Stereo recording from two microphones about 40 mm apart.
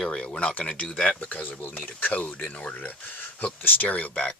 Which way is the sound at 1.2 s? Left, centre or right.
Left.